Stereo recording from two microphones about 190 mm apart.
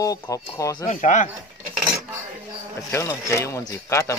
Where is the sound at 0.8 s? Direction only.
40° left (ahead or behind).